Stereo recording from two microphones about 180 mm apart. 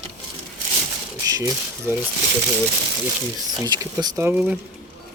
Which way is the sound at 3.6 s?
20° right (ahead or behind).